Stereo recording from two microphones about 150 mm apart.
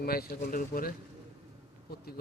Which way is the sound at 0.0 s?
90° left.